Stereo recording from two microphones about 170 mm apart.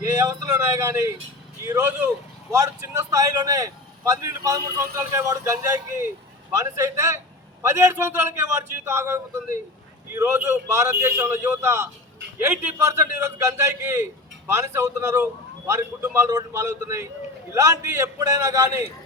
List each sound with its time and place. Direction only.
0.0 s a man's voice: 20° right (ahead or behind)